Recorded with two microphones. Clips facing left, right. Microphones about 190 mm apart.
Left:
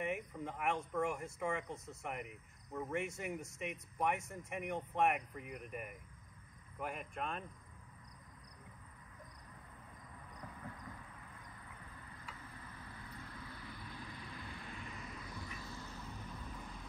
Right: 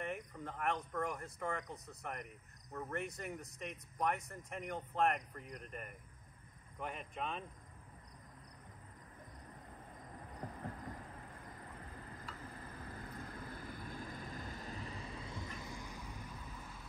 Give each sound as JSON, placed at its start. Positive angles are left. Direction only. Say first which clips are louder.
{"t": 0.0, "sound": "a sound", "louder": "left 3 dB", "side_deg": 0}
{"t": 0.7, "sound": "speech", "louder": "left 2 dB", "side_deg": 0}
{"t": 4.5, "sound": "speech", "louder": "left 2 dB", "side_deg": 0}
{"t": 10.4, "sound": "train", "louder": "right 5 dB", "side_deg": -40}
{"t": 12.4, "sound": "vehicle", "louder": "right 4 dB", "side_deg": -40}